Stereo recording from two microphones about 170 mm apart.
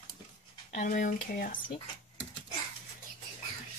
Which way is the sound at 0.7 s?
45° left (ahead or behind).